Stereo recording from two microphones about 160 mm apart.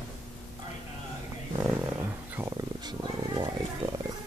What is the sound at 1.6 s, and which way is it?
Roaring cats, 10° right (ahead or behind).